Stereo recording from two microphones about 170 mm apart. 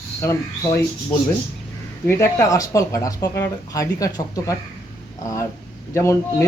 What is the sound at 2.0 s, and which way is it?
Speech, 15° left (ahead or behind).